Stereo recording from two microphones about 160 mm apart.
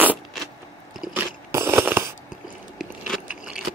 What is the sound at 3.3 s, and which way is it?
Vehicle, 5° right (ahead or behind).